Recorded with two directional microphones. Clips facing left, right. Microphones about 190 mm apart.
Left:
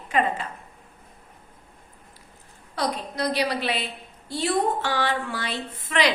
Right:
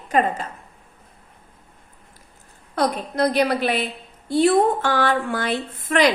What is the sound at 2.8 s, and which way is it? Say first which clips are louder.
A woman's voice: right 6 dB; 55° right (ahead or behind).